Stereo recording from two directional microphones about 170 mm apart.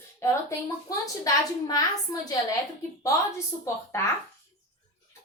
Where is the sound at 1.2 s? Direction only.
20° left (ahead or behind).